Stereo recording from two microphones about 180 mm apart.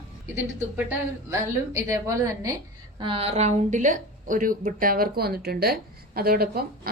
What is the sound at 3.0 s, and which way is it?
A woman's voice, 30° right (ahead or behind).